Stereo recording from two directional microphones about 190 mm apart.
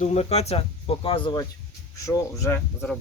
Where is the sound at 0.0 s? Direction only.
35° left (ahead or behind).